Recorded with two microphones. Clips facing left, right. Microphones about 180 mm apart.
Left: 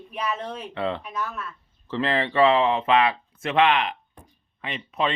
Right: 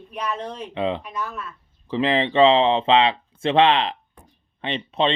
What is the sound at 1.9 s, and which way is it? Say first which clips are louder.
Speech: right 4 dB; 20° right (ahead or behind).